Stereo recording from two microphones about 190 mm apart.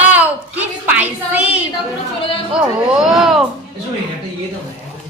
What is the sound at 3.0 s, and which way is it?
Speech, centre (ahead or behind).